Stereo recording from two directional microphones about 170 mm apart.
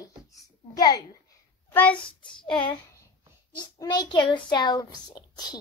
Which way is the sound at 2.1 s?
30° left (ahead or behind).